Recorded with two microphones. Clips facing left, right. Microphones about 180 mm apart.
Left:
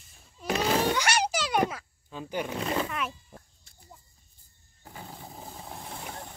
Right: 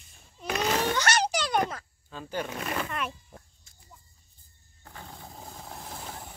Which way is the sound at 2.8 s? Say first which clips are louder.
Even; centre (ahead or behind).